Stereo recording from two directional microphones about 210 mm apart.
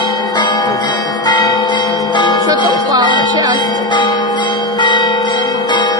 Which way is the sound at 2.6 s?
20° left (ahead or behind).